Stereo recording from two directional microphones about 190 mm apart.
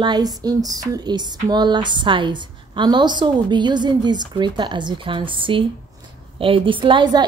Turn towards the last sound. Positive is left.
turn(degrees=-25)  # may be behind; listen again after turning